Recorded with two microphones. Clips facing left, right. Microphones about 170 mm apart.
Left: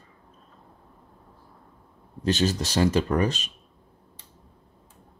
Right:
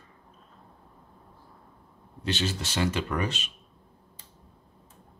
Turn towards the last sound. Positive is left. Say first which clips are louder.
# left 6 dB
turn(degrees=40)  # may be behind; listen again after turning